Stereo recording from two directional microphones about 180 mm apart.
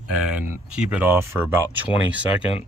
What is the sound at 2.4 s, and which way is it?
Speech, 35° left (ahead or behind).